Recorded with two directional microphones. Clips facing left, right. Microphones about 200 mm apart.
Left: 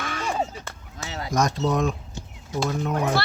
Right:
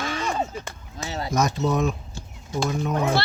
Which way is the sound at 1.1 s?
30° right (ahead or behind).